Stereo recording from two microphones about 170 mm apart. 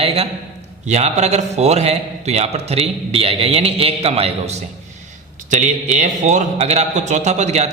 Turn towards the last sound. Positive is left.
turn(degrees=-40)  # may be behind; listen again after turning